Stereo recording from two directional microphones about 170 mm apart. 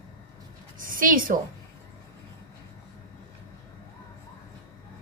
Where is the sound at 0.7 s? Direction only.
55° right (ahead or behind).